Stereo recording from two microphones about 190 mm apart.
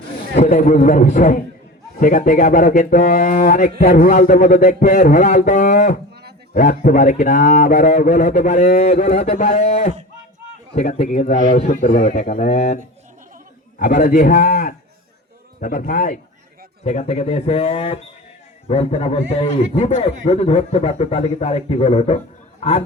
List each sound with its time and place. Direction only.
0.3 s a man's voice: 40° left (ahead or behind)
16.8 s a man's voice: 35° left (ahead or behind)